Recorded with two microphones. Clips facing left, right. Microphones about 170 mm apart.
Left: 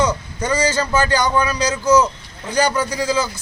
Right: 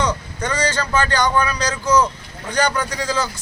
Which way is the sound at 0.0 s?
5° left (ahead or behind).